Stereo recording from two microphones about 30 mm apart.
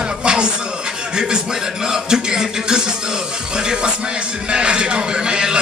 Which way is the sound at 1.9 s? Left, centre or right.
Right.